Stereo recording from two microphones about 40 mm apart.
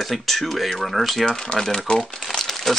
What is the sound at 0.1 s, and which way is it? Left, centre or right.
Speech, centre.